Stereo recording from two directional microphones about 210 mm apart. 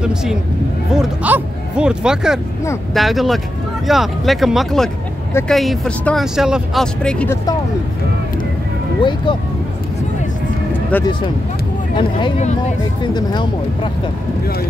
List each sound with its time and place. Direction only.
0.0 s speech: 5° right (ahead or behind)
9.0 s speech: 25° left (ahead or behind)
11.9 s speech: 25° left (ahead or behind)
13.1 s speech: 20° left (ahead or behind)